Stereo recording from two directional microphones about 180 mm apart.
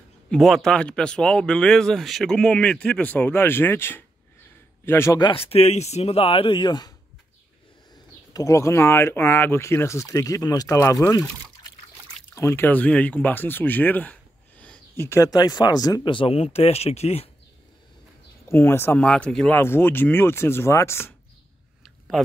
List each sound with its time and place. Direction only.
0.3 s speech: centre (ahead or behind)
5.2 s speech: 30° left (ahead or behind)
8.3 s speech: 20° left (ahead or behind)
12.4 s speech: 15° left (ahead or behind); by 17.3 s 35° left (ahead or behind)
18.5 s speech: 10° left (ahead or behind)